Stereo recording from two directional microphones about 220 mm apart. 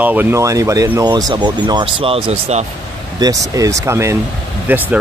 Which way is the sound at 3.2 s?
15° right (ahead or behind).